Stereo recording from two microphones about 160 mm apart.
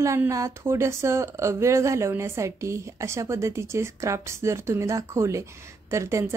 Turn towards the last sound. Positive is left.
turn(degrees=-20)  # may be behind; listen again after turning